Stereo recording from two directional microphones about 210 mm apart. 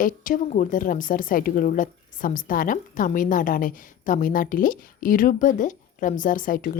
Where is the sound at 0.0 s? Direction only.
40° left (ahead or behind).